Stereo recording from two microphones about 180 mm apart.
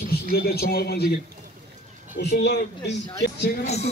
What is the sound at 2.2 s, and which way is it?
Speech, 70° left (ahead or behind).